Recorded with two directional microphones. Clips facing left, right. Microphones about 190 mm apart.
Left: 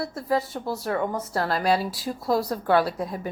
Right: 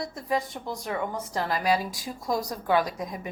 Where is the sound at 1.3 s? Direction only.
15° right (ahead or behind).